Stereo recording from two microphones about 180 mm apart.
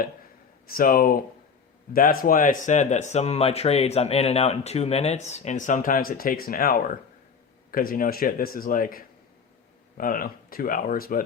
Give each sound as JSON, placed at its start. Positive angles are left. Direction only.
{"t": 0.7, "sound": "speech", "side_deg": 55}